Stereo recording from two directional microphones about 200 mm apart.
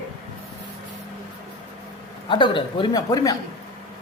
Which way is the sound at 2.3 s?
25° left (ahead or behind).